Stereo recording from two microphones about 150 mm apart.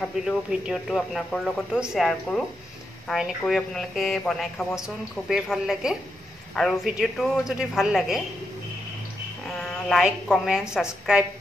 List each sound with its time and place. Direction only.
0.0 s speech: centre (ahead or behind)
9.8 s speech: centre (ahead or behind)